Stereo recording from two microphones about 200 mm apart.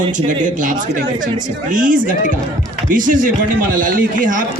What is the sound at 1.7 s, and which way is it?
A man's voice, 40° right (ahead or behind).